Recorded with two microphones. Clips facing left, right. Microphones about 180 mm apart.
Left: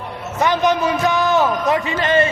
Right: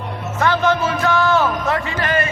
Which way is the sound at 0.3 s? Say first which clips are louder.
Left 1 dB; 15° left (ahead or behind).